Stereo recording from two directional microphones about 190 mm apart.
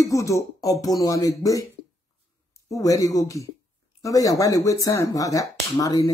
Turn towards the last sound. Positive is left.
turn(degrees=20)  # may be behind; listen again after turning